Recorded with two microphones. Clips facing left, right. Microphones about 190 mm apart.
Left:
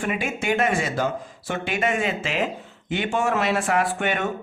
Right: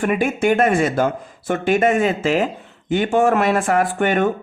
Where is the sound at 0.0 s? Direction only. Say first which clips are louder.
Right 8 dB; 55° right (ahead or behind).